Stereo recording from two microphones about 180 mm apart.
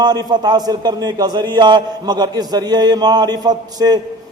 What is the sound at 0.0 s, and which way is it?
A man's voice, 20° right (ahead or behind).